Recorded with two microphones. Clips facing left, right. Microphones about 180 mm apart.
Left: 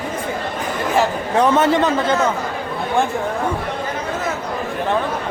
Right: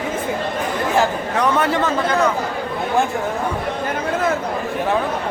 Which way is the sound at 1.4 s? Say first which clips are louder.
Left 4 dB; 20° left (ahead or behind).